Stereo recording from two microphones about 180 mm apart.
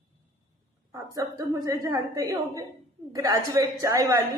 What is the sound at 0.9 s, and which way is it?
A woman's voice, 20° right (ahead or behind).